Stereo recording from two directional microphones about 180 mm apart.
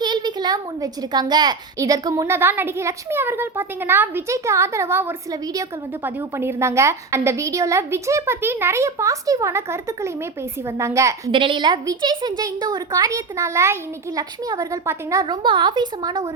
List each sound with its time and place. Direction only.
0.0 s a woman's voice: 25° right (ahead or behind)
11.3 s a woman's voice: 30° right (ahead or behind)